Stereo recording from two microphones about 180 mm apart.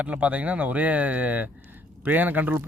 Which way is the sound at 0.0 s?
10° right (ahead or behind).